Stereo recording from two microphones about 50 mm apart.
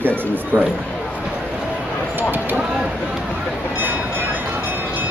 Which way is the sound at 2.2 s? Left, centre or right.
Right.